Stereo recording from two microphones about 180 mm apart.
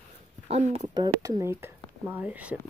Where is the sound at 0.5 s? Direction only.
40° right (ahead or behind).